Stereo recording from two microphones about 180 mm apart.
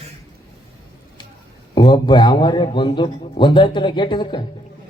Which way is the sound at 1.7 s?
25° left (ahead or behind).